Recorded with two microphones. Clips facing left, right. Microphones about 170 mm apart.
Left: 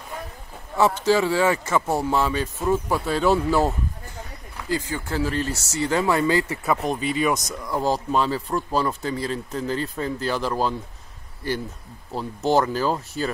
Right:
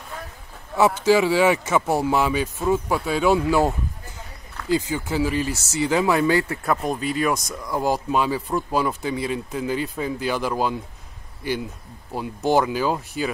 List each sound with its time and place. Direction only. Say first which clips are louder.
0.7 s speech: right 2 dB; 5° right (ahead or behind)
4.6 s speech: right 4 dB; 20° right (ahead or behind); by 7.8 s centre (ahead or behind)
7.8 s speech: right 1 dB; 10° right (ahead or behind)
8.7 s speech: right 1 dB; 15° right (ahead or behind)
12.1 s speech: right 1 dB; 15° right (ahead or behind)